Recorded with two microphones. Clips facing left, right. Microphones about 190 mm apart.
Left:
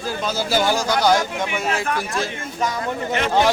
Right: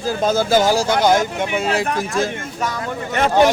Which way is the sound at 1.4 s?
35° right (ahead or behind).